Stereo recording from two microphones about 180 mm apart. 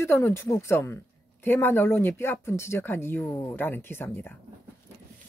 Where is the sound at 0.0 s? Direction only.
15° left (ahead or behind).